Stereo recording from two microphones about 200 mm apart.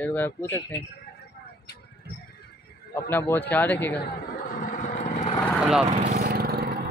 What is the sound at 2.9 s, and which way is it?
Speech, 10° left (ahead or behind).